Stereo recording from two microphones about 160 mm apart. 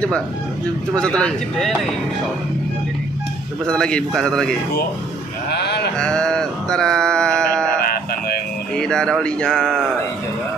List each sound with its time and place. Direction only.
0.9 s speech: 5° left (ahead or behind)
3.6 s speech: 5° left (ahead or behind)
5.5 s sheep: 90° left
5.9 s a sound: 5° left (ahead or behind)
8.7 s speech: 5° left (ahead or behind)